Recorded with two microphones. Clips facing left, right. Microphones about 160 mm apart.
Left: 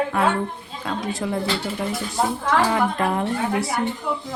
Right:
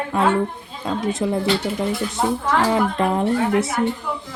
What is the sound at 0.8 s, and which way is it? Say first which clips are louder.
Speech: right 4 dB; 20° right (ahead or behind).